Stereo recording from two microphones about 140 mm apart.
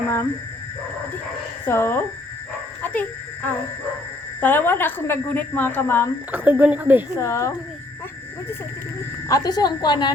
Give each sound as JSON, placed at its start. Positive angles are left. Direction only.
{"t": 1.6, "sound": "a woman's voice", "side_deg": 15}
{"t": 2.8, "sound": "a sound", "side_deg": 10}
{"t": 4.4, "sound": "a woman's voice", "side_deg": 15}
{"t": 6.3, "sound": "speech", "side_deg": -15}
{"t": 7.2, "sound": "a woman's voice", "side_deg": 20}
{"t": 9.3, "sound": "a woman's voice", "side_deg": 25}